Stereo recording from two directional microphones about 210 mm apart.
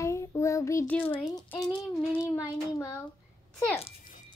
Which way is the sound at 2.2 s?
15° left (ahead or behind).